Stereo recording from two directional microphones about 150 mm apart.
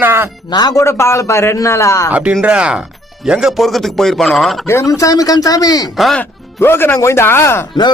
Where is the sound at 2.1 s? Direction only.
10° right (ahead or behind).